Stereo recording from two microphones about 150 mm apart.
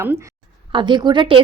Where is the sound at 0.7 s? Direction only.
30° right (ahead or behind).